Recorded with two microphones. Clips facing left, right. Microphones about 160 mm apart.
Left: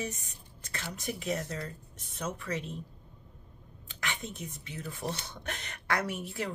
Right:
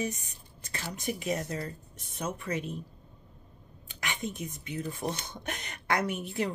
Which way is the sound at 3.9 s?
15° right (ahead or behind).